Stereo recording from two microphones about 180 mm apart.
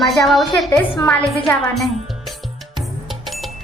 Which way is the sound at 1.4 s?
Centre (ahead or behind).